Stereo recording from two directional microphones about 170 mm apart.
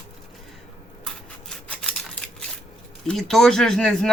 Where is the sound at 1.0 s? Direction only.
5° left (ahead or behind).